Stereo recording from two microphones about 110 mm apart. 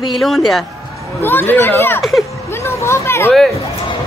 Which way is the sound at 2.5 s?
25° left (ahead or behind).